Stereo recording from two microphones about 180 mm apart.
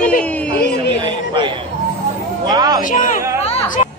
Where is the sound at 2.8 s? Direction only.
50° left (ahead or behind).